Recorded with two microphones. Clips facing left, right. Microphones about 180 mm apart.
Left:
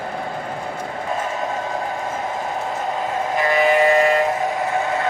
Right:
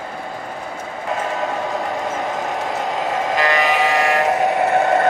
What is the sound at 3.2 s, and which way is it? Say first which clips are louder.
Sheep: left 2 dB; 90° right.